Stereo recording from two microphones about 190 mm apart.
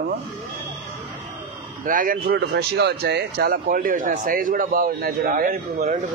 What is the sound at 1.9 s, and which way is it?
Speech, 45° right (ahead or behind).